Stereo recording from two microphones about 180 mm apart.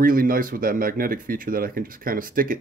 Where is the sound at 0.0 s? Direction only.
50° right (ahead or behind).